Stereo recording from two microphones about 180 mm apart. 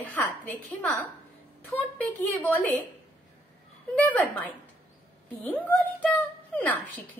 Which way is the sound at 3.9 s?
10° left (ahead or behind).